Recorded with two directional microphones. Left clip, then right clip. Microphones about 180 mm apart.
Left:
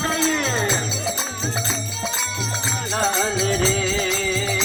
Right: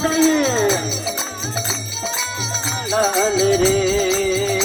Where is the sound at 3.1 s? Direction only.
35° right (ahead or behind).